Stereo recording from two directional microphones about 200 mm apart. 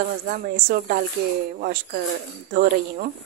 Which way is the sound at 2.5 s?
45° right (ahead or behind).